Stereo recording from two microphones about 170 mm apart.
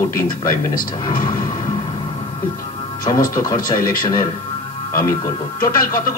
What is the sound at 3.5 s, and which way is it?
Speech, 55° left (ahead or behind).